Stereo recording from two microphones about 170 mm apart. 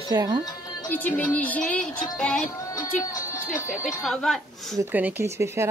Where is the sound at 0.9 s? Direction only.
10° left (ahead or behind).